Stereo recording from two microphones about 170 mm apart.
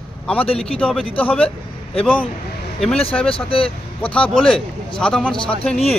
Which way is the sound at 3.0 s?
35° left (ahead or behind).